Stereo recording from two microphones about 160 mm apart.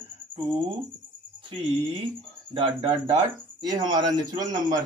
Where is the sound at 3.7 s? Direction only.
25° right (ahead or behind).